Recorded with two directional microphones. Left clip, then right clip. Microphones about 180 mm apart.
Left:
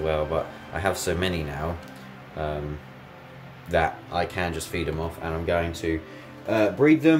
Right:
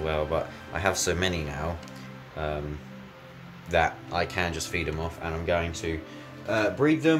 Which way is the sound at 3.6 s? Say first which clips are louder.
Left 1 dB; centre (ahead or behind).